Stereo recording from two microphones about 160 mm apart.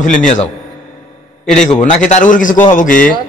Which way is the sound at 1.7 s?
50° left (ahead or behind).